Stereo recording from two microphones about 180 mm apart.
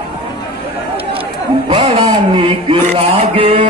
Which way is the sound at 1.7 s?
30° right (ahead or behind).